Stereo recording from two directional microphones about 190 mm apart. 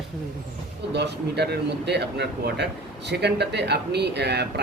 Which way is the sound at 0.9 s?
60° right (ahead or behind).